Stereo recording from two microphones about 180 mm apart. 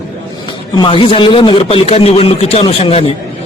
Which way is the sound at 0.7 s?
30° left (ahead or behind).